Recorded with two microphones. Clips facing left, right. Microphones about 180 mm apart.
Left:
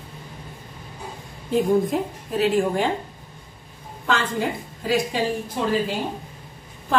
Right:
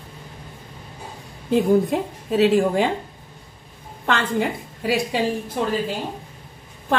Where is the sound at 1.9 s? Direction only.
70° right (ahead or behind).